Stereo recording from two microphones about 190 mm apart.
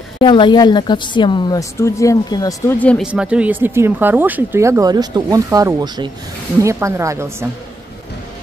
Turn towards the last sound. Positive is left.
turn(degrees=-15)  # may be behind; listen again after turning